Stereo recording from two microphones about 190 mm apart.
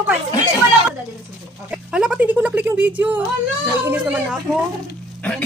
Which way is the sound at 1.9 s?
5° right (ahead or behind).